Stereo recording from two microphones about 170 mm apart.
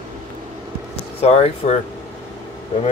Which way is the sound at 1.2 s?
40° left (ahead or behind).